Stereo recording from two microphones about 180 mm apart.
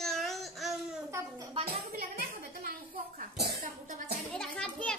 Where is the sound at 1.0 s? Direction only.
15° right (ahead or behind).